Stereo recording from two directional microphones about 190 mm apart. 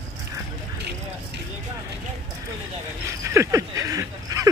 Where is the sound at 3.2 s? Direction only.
15° right (ahead or behind).